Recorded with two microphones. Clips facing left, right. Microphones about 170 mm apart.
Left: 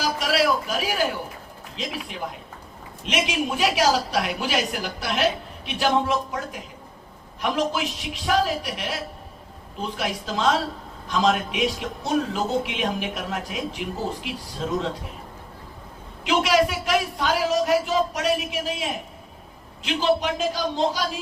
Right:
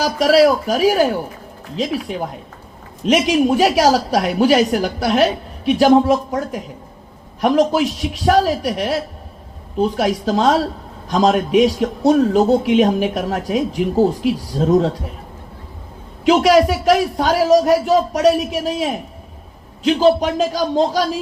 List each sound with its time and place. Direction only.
0.0 s a man's voice: 40° right (ahead or behind)
16.2 s a man's voice: 40° right (ahead or behind)